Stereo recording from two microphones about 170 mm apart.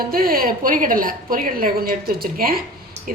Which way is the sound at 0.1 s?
60° right (ahead or behind).